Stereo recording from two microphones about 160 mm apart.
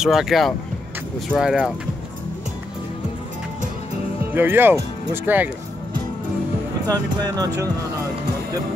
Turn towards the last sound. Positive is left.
turn(degrees=-20)  # may be behind; listen again after turning